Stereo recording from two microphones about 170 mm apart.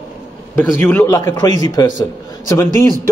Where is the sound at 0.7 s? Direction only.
15° left (ahead or behind).